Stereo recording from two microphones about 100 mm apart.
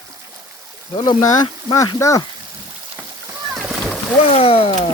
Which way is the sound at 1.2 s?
35° left (ahead or behind).